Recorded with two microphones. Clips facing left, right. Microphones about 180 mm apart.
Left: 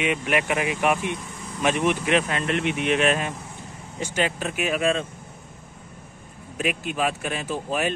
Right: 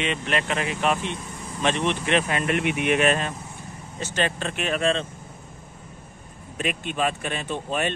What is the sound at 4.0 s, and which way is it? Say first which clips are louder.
A man's voice: left 1 dB; 10° left (ahead or behind).